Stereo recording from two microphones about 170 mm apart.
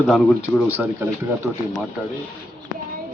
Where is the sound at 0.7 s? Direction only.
10° right (ahead or behind).